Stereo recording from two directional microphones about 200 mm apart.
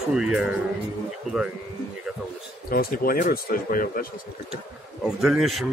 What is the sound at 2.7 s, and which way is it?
Speech, 45° left (ahead or behind).